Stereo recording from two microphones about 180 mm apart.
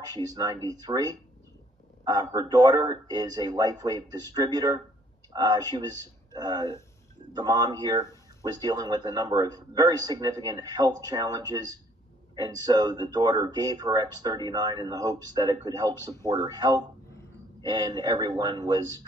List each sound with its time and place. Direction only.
0.1 s speech: 20° right (ahead or behind)